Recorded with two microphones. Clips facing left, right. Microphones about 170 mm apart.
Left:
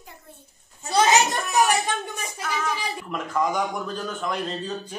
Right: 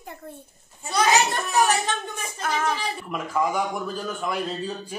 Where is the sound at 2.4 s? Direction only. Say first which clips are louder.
Right 3 dB; 50° right (ahead or behind).